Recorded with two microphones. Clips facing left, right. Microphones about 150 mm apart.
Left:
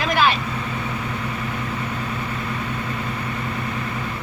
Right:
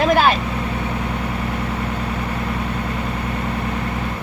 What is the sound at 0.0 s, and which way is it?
Vehicle, 45° right (ahead or behind).